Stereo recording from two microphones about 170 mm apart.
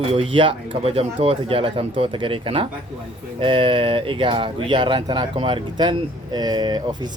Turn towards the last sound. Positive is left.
turn(degrees=-25)  # may be behind; listen again after turning